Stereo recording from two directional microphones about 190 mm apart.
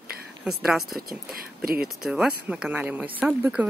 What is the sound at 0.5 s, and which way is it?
Speech, centre (ahead or behind).